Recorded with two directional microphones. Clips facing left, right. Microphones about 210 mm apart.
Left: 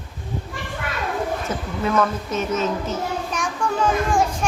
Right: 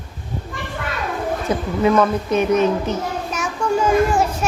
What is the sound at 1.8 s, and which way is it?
Speech, 15° right (ahead or behind).